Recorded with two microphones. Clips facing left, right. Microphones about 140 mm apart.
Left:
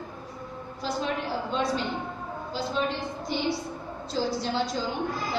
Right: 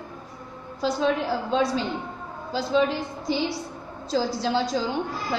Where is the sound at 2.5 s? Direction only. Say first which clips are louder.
Right 7 dB; 90° right.